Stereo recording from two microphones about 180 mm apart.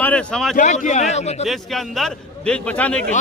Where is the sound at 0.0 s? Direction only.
5° left (ahead or behind).